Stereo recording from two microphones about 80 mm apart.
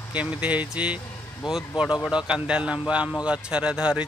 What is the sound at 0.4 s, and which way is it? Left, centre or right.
Speech, centre.